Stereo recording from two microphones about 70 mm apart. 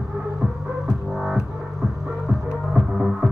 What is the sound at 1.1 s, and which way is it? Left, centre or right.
Music, centre.